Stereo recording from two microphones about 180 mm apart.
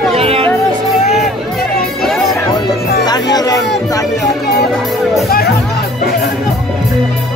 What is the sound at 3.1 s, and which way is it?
Music, 20° left (ahead or behind).